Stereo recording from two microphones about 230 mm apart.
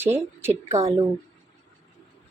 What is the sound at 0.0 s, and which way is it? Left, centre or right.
Speech, centre.